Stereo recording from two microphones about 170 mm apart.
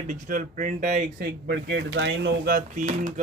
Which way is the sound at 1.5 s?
90° right.